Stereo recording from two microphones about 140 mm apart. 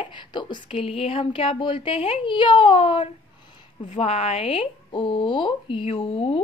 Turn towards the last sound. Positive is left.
turn(degrees=45)  # may be behind; listen again after turning